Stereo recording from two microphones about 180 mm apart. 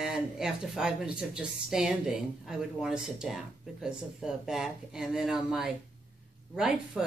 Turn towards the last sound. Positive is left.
turn(degrees=-5)  # may be behind; listen again after turning